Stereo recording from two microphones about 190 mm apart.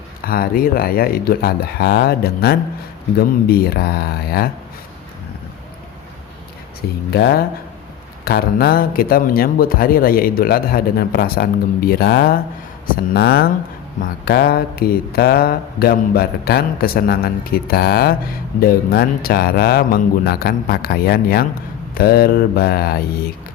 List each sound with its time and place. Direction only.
0.3 s a man's voice: 50° left (ahead or behind)
7.1 s a man's voice: 55° left (ahead or behind)